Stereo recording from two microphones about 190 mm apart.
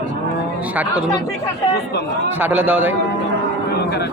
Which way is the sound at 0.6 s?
5° right (ahead or behind).